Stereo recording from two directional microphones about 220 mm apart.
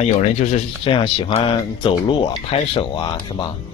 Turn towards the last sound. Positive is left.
turn(degrees=20)  # may be behind; listen again after turning